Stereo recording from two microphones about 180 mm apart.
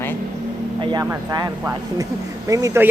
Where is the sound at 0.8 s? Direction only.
25° right (ahead or behind).